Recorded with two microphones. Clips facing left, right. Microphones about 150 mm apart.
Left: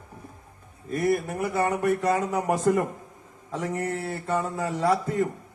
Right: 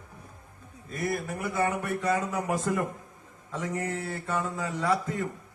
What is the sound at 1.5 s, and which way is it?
Speech, 35° left (ahead or behind).